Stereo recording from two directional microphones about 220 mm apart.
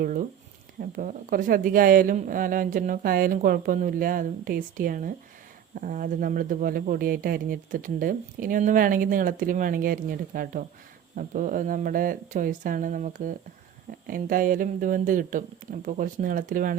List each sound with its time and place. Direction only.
0.0 s speech: 40° right (ahead or behind)